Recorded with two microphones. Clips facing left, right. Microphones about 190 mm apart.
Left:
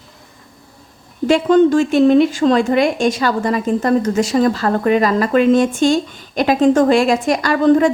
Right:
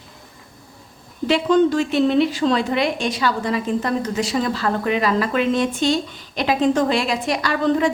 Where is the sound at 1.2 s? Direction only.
50° left (ahead or behind).